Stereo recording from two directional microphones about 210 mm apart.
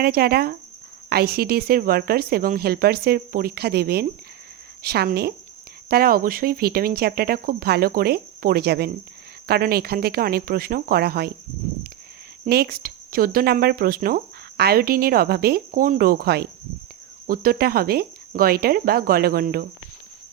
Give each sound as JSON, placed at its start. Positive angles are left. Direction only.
{"t": 0.0, "sound": "speech", "side_deg": -45}
{"t": 12.5, "sound": "speech", "side_deg": -45}